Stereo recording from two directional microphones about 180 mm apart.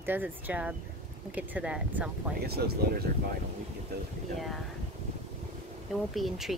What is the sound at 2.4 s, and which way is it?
Speech, 60° right (ahead or behind).